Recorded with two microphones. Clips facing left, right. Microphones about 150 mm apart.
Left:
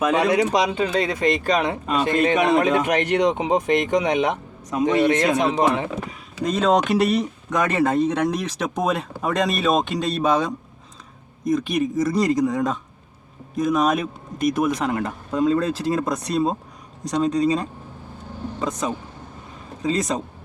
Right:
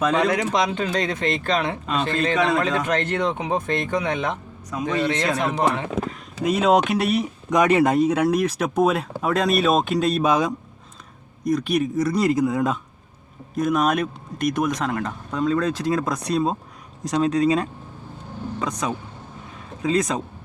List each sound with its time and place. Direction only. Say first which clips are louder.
0.0 s speech: left 2 dB; 10° left (ahead or behind)
6.4 s speech: right 1 dB; 10° right (ahead or behind)
7.5 s speech: right 3 dB; 15° right (ahead or behind)
18.6 s speech: left 2 dB; centre (ahead or behind)